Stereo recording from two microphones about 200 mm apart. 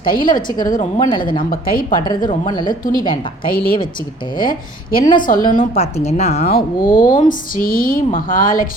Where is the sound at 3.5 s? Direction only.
50° left (ahead or behind).